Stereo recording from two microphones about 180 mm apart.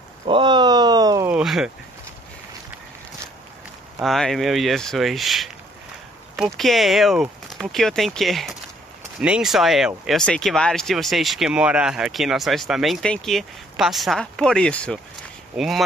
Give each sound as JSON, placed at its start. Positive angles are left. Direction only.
{"t": 0.2, "sound": "a sound", "side_deg": -25}
{"t": 1.3, "sound": "speech", "side_deg": 0}
{"t": 4.0, "sound": "speech", "side_deg": 0}